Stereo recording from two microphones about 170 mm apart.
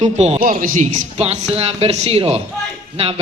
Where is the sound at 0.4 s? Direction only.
55° right (ahead or behind).